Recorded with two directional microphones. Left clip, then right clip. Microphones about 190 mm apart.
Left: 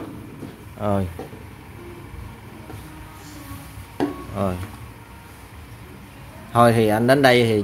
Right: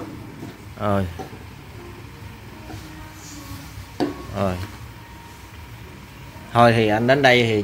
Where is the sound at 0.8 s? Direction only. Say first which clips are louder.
Right 1 dB; 5° left (ahead or behind).